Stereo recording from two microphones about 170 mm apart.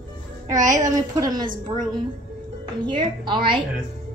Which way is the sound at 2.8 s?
30° right (ahead or behind).